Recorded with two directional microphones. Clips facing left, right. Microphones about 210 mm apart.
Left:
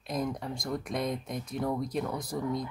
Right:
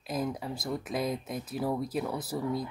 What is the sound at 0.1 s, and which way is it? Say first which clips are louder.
Speech: even; 5° right (ahead or behind).